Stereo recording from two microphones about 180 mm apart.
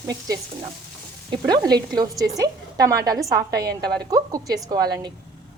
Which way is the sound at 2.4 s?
20° right (ahead or behind).